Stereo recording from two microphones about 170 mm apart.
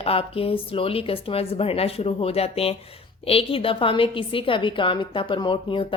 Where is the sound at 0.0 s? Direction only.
35° left (ahead or behind).